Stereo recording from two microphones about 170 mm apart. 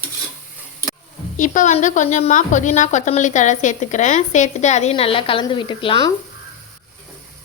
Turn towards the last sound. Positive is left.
turn(degrees=25)  # may be behind; listen again after turning